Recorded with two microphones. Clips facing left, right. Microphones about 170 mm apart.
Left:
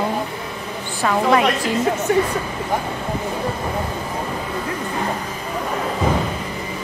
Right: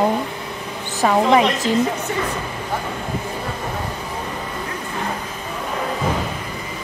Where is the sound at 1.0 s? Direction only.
20° right (ahead or behind).